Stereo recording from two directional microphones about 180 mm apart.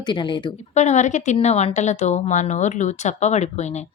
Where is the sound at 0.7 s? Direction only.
40° left (ahead or behind).